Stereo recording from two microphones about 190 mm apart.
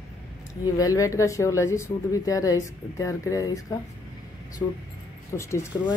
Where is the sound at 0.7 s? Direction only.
20° left (ahead or behind).